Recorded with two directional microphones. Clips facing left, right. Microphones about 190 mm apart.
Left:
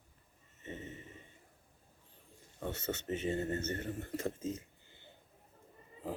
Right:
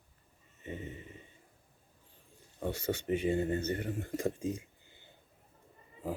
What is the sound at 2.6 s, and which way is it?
Speech, 15° right (ahead or behind).